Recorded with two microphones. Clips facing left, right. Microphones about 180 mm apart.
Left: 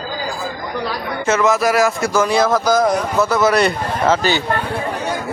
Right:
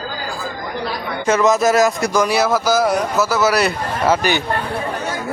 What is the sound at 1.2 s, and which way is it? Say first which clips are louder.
A man's voice: right 1 dB; 15° right (ahead or behind).